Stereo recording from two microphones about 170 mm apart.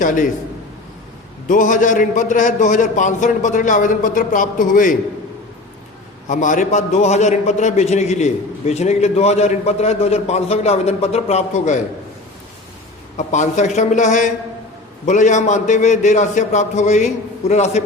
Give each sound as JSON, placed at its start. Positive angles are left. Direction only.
{"t": 0.0, "sound": "a man's voice", "side_deg": 50}
{"t": 1.5, "sound": "a man's voice", "side_deg": 50}
{"t": 6.2, "sound": "a man's voice", "side_deg": 50}
{"t": 13.1, "sound": "a man's voice", "side_deg": 45}